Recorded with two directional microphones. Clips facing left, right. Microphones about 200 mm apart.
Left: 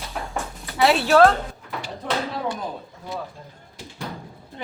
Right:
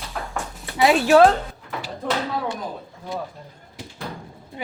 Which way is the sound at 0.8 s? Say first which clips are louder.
Right 2 dB; 15° right (ahead or behind).